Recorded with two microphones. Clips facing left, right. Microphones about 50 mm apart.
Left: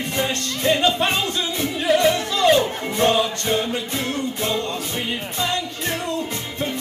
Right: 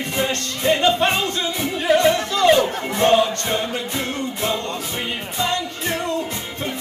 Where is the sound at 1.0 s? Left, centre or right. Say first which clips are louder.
Right 2 dB; centre.